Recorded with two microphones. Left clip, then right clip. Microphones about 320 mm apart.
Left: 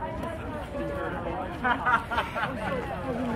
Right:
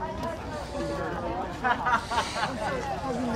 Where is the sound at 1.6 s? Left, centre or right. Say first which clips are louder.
Left 1 dB; right.